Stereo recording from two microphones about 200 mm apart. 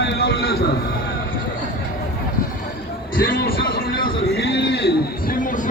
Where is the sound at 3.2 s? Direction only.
45° left (ahead or behind).